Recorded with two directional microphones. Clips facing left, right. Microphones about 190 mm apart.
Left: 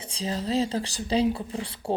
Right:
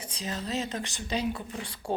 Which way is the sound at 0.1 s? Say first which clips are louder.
Left 6 dB; 30° left (ahead or behind).